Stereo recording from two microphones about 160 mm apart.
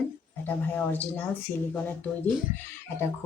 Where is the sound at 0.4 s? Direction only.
10° left (ahead or behind).